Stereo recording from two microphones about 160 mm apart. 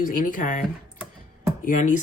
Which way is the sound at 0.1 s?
55° left (ahead or behind).